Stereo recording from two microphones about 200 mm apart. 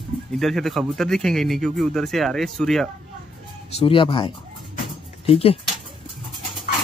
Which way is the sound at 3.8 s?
25° left (ahead or behind).